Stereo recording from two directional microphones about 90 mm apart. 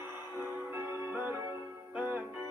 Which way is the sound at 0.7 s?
25° right (ahead or behind).